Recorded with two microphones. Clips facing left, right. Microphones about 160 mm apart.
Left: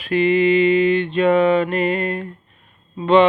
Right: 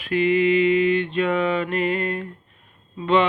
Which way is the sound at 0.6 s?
75° left (ahead or behind).